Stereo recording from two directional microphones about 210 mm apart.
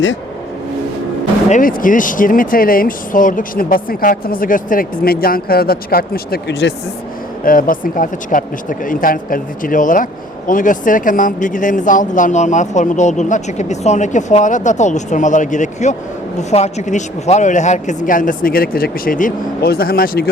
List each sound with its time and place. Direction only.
1.5 s speech: 40° left (ahead or behind)
7.4 s speech: 40° left (ahead or behind)